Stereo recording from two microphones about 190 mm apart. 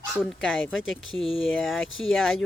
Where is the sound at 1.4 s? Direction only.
Centre (ahead or behind).